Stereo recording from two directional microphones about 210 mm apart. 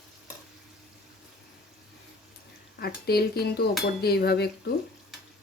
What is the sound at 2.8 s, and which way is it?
Speech, 50° left (ahead or behind).